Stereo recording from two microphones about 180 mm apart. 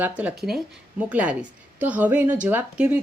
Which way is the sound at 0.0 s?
10° right (ahead or behind).